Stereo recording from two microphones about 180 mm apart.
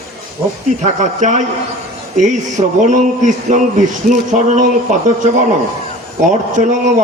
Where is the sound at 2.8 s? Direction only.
40° right (ahead or behind).